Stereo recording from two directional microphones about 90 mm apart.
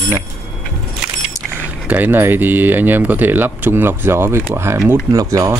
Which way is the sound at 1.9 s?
20° right (ahead or behind).